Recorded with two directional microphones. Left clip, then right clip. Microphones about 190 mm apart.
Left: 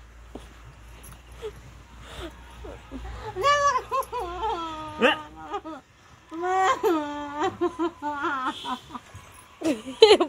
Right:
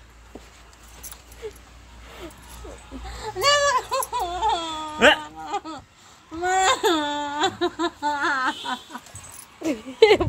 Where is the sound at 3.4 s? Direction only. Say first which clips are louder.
Right 2 dB; 10° right (ahead or behind).